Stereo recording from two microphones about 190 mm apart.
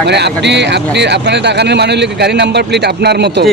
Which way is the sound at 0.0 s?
60° right (ahead or behind).